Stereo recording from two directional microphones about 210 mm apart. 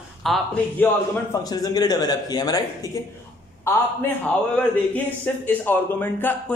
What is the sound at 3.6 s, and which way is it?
A man's voice, 10° left (ahead or behind).